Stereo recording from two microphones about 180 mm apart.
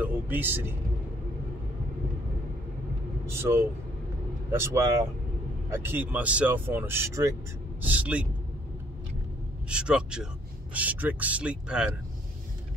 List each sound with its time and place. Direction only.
0.0 s speech: 10° right (ahead or behind)
3.3 s speech: 15° right (ahead or behind)
9.7 s speech: 5° right (ahead or behind)